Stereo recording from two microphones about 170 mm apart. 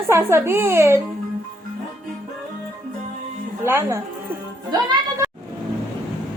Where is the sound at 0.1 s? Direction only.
15° right (ahead or behind).